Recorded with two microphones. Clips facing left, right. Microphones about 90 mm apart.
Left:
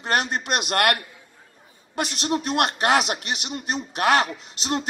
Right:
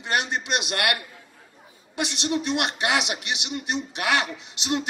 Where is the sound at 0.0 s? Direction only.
45° left (ahead or behind).